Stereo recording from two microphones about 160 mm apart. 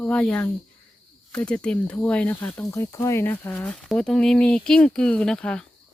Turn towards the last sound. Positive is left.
turn(degrees=5)  # may be behind; listen again after turning